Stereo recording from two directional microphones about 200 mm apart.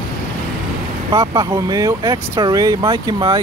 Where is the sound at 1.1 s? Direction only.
15° right (ahead or behind).